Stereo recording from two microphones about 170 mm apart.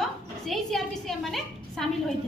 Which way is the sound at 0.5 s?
Centre (ahead or behind).